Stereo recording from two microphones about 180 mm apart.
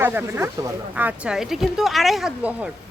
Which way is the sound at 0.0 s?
10° right (ahead or behind).